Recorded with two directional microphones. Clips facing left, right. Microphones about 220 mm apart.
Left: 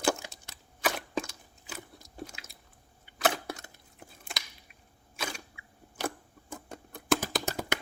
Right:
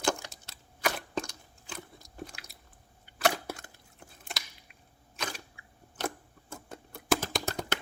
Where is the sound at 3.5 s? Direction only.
20° left (ahead or behind).